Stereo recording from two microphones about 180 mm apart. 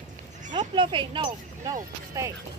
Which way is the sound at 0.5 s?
25° right (ahead or behind).